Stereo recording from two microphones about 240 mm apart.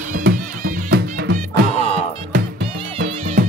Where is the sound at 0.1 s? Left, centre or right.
Right.